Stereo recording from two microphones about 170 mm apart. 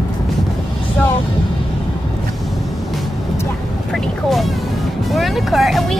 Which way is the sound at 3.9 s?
Centre (ahead or behind).